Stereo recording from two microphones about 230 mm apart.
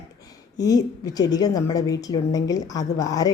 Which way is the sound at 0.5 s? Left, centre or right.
Centre.